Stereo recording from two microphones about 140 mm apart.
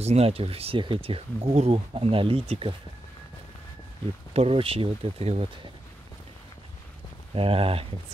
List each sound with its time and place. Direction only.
0.0 s speech: 45° right (ahead or behind)
4.3 s speech: 45° right (ahead or behind)
7.3 s speech: 40° right (ahead or behind)